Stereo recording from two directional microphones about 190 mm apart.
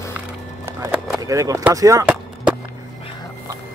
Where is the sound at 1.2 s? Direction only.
15° right (ahead or behind).